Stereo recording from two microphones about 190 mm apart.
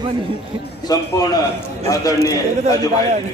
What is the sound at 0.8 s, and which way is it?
A man's voice, 20° left (ahead or behind).